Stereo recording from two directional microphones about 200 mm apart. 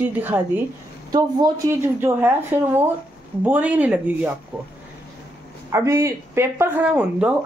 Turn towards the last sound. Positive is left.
turn(degrees=-5)  # may be behind; listen again after turning